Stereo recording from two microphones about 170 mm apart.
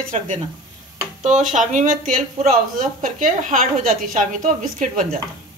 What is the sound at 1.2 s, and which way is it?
Speech, 45° right (ahead or behind).